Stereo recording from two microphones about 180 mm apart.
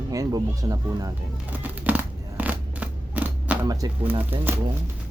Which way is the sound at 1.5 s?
10° right (ahead or behind).